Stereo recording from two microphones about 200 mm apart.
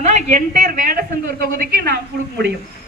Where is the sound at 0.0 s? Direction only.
35° right (ahead or behind).